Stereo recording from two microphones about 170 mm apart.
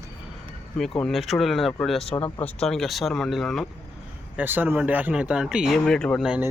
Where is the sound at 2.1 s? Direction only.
20° left (ahead or behind).